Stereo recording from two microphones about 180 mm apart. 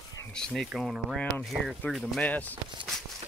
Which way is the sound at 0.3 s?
5° left (ahead or behind).